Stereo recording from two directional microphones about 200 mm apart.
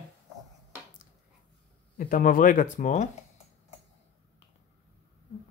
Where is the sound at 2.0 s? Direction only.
45° left (ahead or behind).